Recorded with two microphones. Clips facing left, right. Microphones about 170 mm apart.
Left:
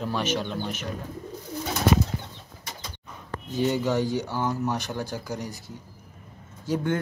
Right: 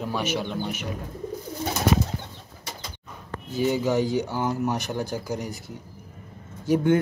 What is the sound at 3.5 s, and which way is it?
Speech, 10° right (ahead or behind).